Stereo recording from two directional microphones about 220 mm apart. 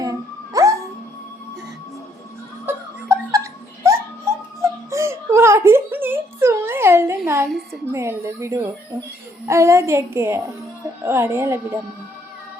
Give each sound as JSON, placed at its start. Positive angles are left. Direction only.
{"t": 0.0, "sound": "music", "side_deg": -15}
{"t": 2.6, "sound": "giggle", "side_deg": -10}
{"t": 7.9, "sound": "a sound", "side_deg": -10}
{"t": 9.5, "sound": "a child's voice", "side_deg": -15}